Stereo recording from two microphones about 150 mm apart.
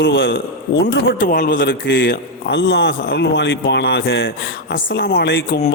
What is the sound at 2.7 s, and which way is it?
Speech, 90° left.